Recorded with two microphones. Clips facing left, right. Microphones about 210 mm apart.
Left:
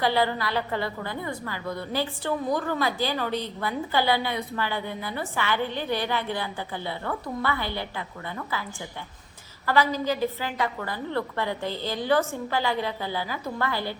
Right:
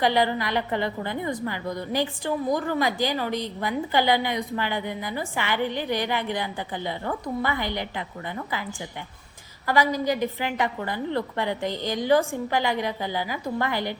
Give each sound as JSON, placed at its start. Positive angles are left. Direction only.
{"t": 0.0, "sound": "a woman's voice", "side_deg": -20}
{"t": 9.6, "sound": "a woman's voice", "side_deg": -15}